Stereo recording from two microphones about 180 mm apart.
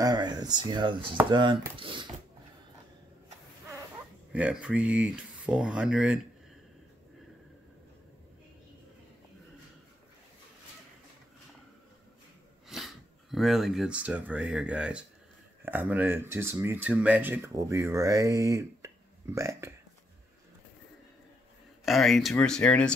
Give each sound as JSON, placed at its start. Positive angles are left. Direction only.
{"t": 0.0, "sound": "speech", "side_deg": -20}
{"t": 4.3, "sound": "speech", "side_deg": -5}
{"t": 12.6, "sound": "speech", "side_deg": 0}
{"t": 21.8, "sound": "speech", "side_deg": 0}